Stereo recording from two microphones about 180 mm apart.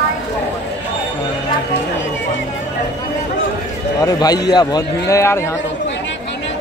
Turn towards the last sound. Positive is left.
turn(degrees=15)  # may be behind; listen again after turning